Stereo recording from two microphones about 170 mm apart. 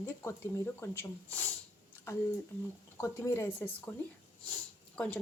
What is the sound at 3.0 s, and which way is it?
Speech, 15° left (ahead or behind).